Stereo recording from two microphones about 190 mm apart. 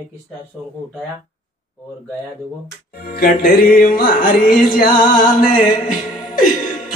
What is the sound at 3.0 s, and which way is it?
Jingle bell, 50° left (ahead or behind).